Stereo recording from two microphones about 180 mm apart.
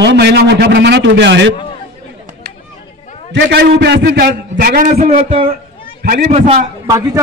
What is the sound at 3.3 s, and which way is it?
A man's voice, 65° right (ahead or behind).